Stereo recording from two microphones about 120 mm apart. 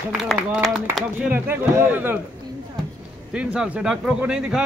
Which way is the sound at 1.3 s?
15° right (ahead or behind).